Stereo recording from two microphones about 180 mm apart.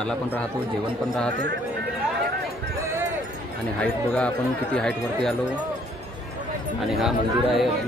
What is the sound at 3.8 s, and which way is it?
Speech, 5° left (ahead or behind).